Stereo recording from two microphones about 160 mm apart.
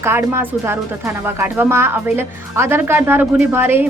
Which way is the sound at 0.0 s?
15° right (ahead or behind).